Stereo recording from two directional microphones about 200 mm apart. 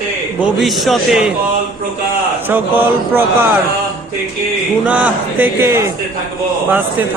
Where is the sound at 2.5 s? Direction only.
10° right (ahead or behind).